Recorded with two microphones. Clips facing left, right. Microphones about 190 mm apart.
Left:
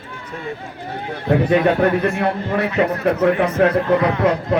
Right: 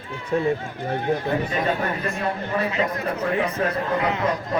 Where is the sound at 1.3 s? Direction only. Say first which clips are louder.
Left 8 dB; 70° left (ahead or behind).